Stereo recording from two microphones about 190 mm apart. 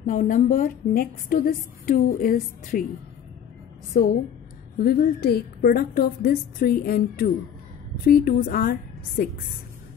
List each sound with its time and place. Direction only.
0.0 s a woman's voice: 45° left (ahead or behind)
3.9 s a woman's voice: 45° left (ahead or behind)